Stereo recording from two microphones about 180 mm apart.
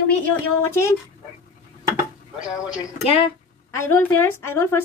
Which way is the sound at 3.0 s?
30° left (ahead or behind).